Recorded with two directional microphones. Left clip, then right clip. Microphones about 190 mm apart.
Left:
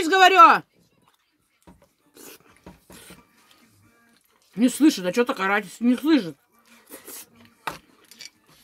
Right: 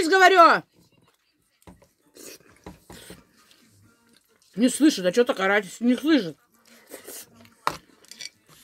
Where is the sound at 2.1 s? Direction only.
10° left (ahead or behind).